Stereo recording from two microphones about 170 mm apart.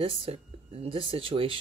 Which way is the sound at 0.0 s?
35° right (ahead or behind).